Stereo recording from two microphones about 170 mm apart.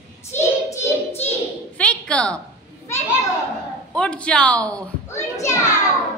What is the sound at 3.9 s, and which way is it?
Speech, 5° left (ahead or behind).